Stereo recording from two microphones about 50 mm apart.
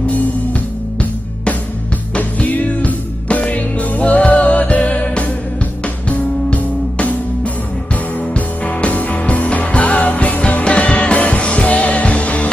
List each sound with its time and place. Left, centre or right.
0.0 s music: left
2.1 s music: left